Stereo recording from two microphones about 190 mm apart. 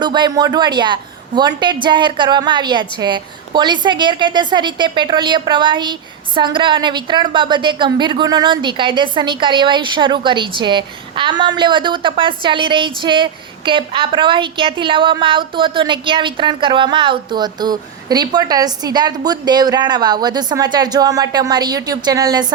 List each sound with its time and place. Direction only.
0.0 s a woman's voice: 25° right (ahead or behind)